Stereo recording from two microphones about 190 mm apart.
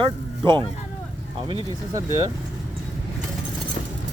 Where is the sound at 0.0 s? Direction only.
25° right (ahead or behind).